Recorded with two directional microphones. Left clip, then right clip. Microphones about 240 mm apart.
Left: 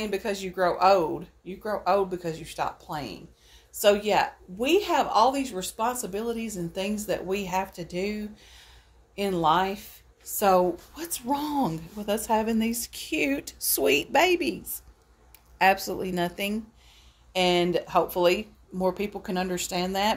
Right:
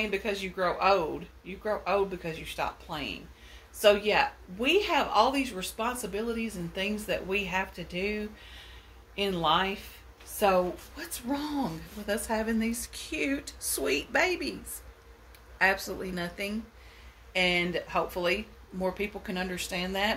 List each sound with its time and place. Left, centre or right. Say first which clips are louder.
0.0 s a woman's voice: left 1 dB; left
15.5 s a woman's voice: left 4 dB; left